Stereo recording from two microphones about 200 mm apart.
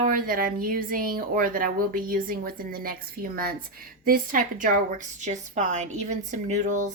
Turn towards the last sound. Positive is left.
turn(degrees=-40)  # may be behind; listen again after turning